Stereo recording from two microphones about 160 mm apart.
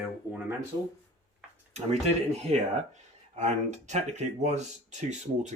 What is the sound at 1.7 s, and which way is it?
Speech, 45° right (ahead or behind).